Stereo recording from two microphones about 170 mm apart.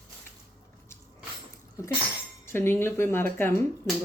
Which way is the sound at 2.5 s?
15° left (ahead or behind).